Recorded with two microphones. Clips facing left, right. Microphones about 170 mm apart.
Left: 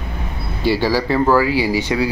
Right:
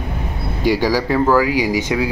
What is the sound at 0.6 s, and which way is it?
Speech, 15° right (ahead or behind).